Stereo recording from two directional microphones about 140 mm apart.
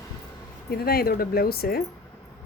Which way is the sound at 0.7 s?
90° left.